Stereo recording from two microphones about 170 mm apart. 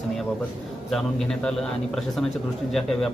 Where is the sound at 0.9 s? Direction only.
Centre (ahead or behind).